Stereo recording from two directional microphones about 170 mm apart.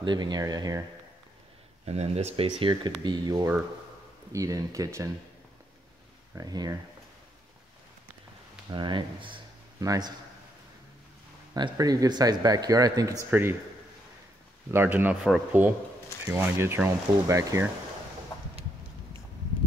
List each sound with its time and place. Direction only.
0.0 s a man's voice: 25° right (ahead or behind)
1.9 s a man's voice: 40° right (ahead or behind); by 5.1 s 20° right (ahead or behind)
6.3 s a man's voice: 20° right (ahead or behind)
8.6 s speech: 25° right (ahead or behind)
11.5 s a man's voice: 25° right (ahead or behind)
14.7 s speech: 10° right (ahead or behind)